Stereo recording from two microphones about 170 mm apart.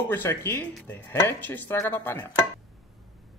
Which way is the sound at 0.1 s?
15° left (ahead or behind).